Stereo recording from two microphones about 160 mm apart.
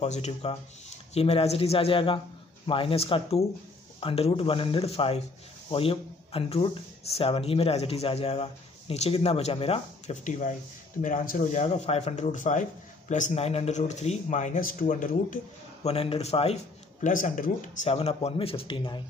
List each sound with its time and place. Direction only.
0.0 s speech: 45° left (ahead or behind)
17.0 s a man's voice: 55° left (ahead or behind)
17.8 s speech: 40° left (ahead or behind)